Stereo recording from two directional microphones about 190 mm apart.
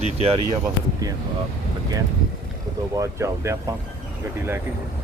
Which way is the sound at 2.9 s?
15° right (ahead or behind).